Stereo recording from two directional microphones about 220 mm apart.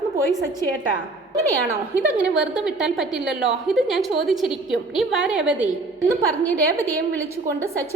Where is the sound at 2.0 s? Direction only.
5° right (ahead or behind).